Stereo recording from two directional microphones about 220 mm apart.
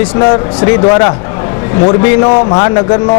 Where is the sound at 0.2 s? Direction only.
25° left (ahead or behind).